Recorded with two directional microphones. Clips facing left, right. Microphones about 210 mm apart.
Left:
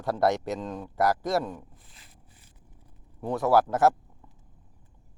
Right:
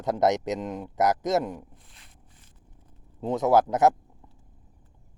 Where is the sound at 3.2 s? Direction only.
20° right (ahead or behind).